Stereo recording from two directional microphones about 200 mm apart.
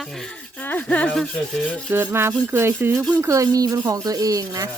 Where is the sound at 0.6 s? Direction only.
10° left (ahead or behind).